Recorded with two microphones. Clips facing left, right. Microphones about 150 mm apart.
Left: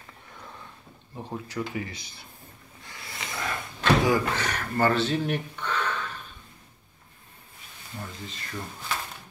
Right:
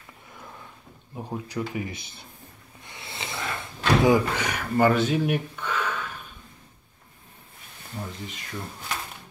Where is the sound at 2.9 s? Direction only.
25° right (ahead or behind).